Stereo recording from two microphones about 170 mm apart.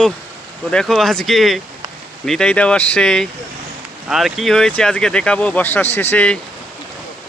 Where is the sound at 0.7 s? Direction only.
5° left (ahead or behind).